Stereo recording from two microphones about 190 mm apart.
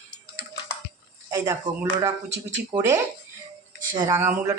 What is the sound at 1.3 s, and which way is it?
Speech, 15° right (ahead or behind).